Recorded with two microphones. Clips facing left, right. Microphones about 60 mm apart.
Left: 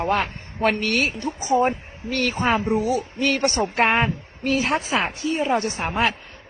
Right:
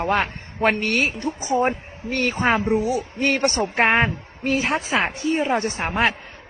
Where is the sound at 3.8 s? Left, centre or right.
Right.